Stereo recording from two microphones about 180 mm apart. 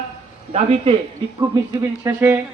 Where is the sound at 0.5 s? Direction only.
40° right (ahead or behind).